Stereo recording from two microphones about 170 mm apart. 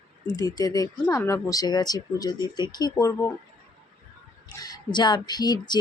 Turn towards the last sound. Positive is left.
turn(degrees=25)  # may be behind; listen again after turning